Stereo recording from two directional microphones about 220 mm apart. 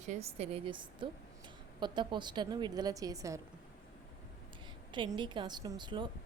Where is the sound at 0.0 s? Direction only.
30° right (ahead or behind); by 3.4 s 15° right (ahead or behind).